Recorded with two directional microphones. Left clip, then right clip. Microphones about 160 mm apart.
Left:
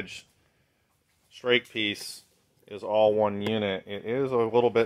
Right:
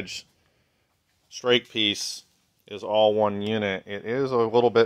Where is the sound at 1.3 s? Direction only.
55° right (ahead or behind).